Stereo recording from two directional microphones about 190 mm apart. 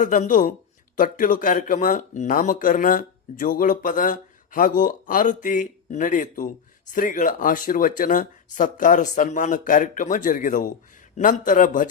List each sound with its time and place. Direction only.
0.0 s speech: 40° left (ahead or behind)